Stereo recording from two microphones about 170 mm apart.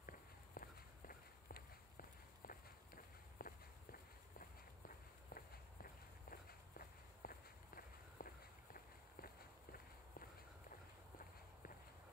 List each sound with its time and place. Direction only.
0.6 s walk: 55° left (ahead or behind)